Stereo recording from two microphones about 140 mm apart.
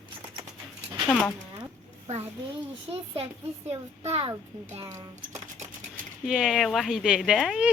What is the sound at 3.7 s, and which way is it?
Speech, 45° right (ahead or behind).